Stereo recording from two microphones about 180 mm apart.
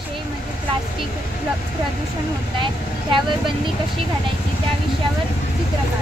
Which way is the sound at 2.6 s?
25° right (ahead or behind).